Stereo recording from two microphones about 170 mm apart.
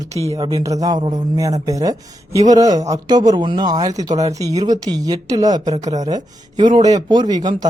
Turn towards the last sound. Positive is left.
turn(degrees=-25)  # may be behind; listen again after turning